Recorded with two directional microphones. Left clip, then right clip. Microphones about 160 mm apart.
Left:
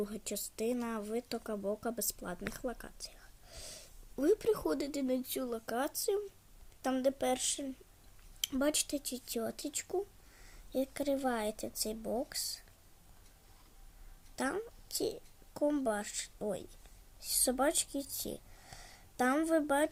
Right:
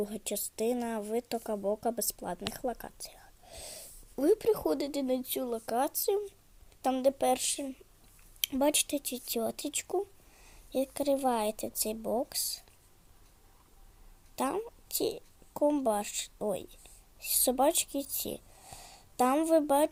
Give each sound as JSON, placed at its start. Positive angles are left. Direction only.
{"t": 0.0, "sound": "a woman's voice", "side_deg": -10}
{"t": 14.3, "sound": "speech", "side_deg": -20}